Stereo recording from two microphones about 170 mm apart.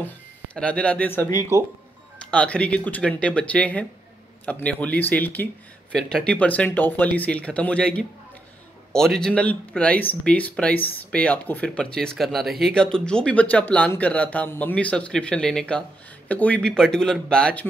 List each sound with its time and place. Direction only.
0.6 s speech: 5° left (ahead or behind)
1.5 s speech: 15° right (ahead or behind)
2.3 s speech: 5° left (ahead or behind)